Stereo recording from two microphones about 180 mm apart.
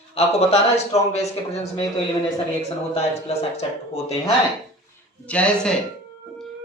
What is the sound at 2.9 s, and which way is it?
Speech, 35° left (ahead or behind).